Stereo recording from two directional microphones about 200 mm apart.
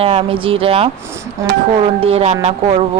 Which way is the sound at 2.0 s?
30° right (ahead or behind).